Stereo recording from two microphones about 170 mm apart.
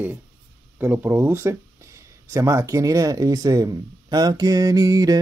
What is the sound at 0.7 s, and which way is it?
Speech, 10° right (ahead or behind).